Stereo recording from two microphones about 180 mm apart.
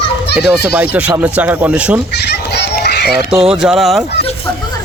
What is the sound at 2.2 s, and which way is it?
Children playing, 70° left (ahead or behind).